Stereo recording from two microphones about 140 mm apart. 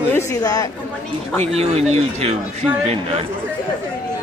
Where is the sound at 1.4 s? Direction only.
50° right (ahead or behind).